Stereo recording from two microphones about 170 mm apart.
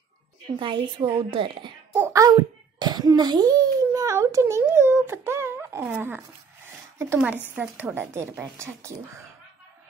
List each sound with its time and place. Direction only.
0.6 s speech: 30° right (ahead or behind)
2.0 s speech: 20° right (ahead or behind)